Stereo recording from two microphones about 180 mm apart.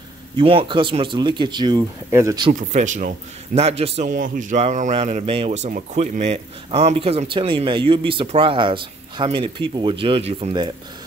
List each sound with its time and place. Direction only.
0.4 s speech: 30° right (ahead or behind)
2.7 s a man's voice: 45° right (ahead or behind)